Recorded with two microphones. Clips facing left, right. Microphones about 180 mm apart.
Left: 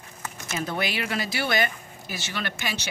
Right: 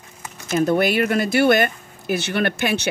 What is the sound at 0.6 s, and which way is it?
Speech, 50° right (ahead or behind).